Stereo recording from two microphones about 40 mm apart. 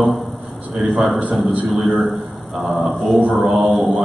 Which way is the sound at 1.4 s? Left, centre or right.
Right.